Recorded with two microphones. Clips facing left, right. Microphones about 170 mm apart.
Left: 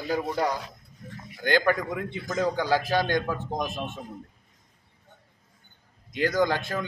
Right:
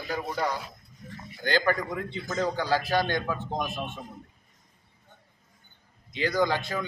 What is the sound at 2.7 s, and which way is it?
Speech, 45° left (ahead or behind).